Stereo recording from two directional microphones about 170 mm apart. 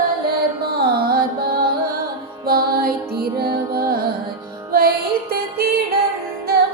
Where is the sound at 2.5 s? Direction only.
60° right (ahead or behind).